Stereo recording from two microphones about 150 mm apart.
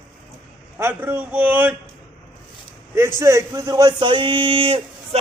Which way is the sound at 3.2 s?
20° right (ahead or behind).